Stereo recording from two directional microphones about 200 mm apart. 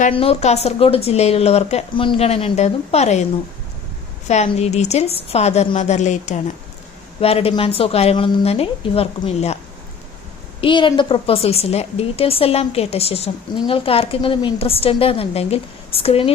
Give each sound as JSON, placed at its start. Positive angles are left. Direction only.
{"t": 0.0, "sound": "speech", "side_deg": 30}
{"t": 4.3, "sound": "a woman's voice", "side_deg": 35}
{"t": 10.6, "sound": "a woman's voice", "side_deg": 25}